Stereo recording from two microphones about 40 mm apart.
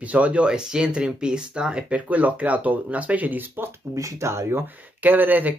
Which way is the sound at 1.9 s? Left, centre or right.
Right.